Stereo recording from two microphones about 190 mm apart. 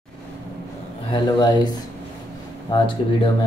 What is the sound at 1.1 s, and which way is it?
Speech, 20° left (ahead or behind).